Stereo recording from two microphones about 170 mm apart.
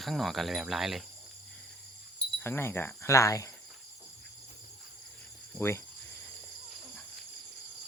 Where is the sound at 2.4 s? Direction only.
15° left (ahead or behind).